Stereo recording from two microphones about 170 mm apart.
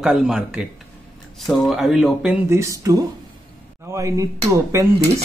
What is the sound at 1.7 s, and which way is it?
Speech, centre (ahead or behind).